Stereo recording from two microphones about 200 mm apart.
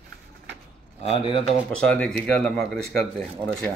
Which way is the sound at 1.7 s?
5° left (ahead or behind).